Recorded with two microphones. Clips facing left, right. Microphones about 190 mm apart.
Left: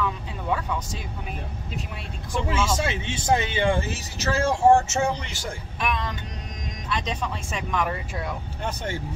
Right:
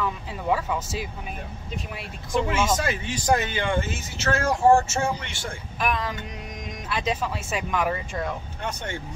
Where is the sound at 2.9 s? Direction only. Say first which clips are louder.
Right 1 dB; 25° left (ahead or behind).